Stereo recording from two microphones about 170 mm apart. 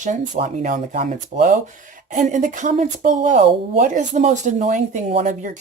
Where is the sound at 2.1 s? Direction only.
50° right (ahead or behind).